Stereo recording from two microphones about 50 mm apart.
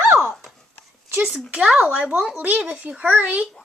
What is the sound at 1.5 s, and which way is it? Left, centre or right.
A child's voice, right.